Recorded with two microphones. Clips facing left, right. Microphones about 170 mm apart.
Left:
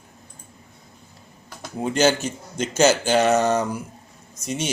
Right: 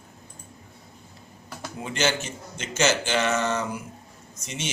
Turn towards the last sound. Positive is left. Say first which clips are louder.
# left 8 dB
turn(degrees=40)  # may be behind; listen again after turning